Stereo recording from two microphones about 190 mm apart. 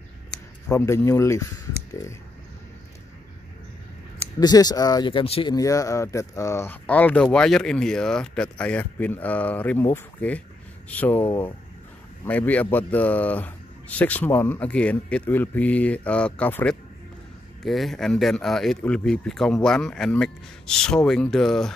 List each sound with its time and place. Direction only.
0.7 s speech: 15° left (ahead or behind)
4.4 s speech: 20° left (ahead or behind); by 21.7 s 5° left (ahead or behind)